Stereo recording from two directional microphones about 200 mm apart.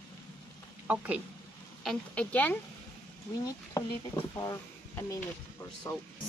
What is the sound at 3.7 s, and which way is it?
Speech, 20° left (ahead or behind).